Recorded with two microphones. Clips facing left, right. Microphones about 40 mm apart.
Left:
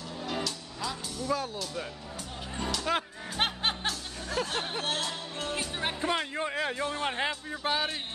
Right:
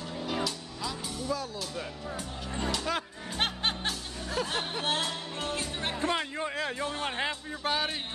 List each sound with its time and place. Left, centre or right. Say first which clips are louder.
0.2 s music: right 1 dB; centre
1.3 s speech: left 3 dB; left
2.9 s speech: left 4 dB; left
3.3 s music: left 1 dB; centre
4.8 s music: right 2 dB; centre
5.5 s speech: left 2 dB; centre